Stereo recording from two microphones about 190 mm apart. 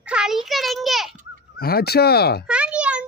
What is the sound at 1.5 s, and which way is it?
Speech, 55° left (ahead or behind).